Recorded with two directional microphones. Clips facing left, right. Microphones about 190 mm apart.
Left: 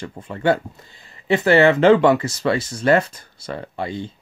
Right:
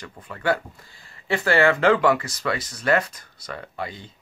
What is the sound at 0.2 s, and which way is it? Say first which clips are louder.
Speech: left 5 dB; 25° left (ahead or behind).